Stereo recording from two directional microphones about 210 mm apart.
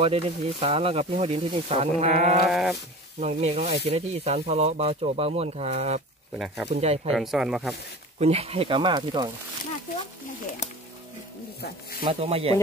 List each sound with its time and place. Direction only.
0.0 s speech: 25° right (ahead or behind)
2.4 s speech: centre (ahead or behind)
3.2 s speech: 30° right (ahead or behind)
6.3 s speech: centre (ahead or behind)
6.7 s speech: 30° right (ahead or behind)
7.2 s speech: centre (ahead or behind)
8.2 s speech: 30° right (ahead or behind)
12.0 s speech: 30° right (ahead or behind)